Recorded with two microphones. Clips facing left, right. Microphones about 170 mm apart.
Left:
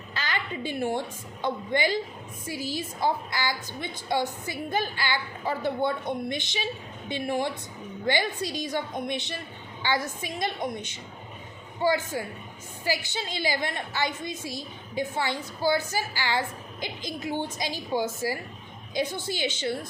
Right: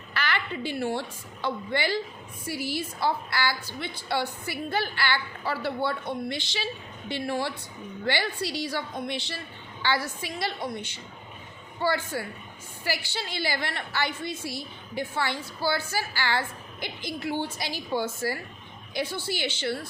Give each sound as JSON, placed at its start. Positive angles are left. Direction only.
{"t": 0.1, "sound": "a woman's voice", "side_deg": 15}